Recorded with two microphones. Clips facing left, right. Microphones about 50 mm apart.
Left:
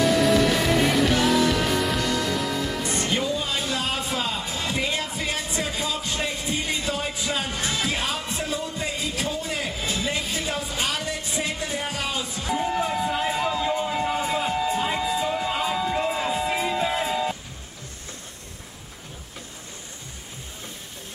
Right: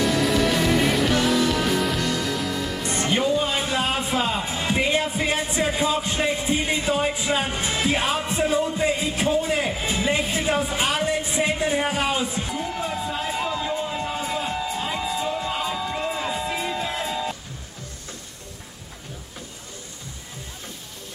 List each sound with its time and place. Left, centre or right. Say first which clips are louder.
0.0 s music: left 2 dB; centre
3.1 s speech: right 7 dB; right
12.5 s speech: left 8 dB; left
13.1 s music: left 2 dB; centre